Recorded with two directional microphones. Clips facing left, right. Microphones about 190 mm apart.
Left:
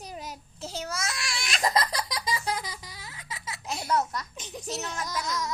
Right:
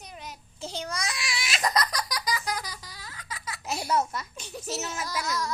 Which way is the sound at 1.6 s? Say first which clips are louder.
Left 1 dB; 25° left (ahead or behind).